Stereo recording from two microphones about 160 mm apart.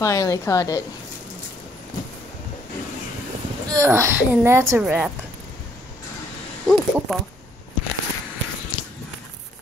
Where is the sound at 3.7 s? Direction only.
20° right (ahead or behind).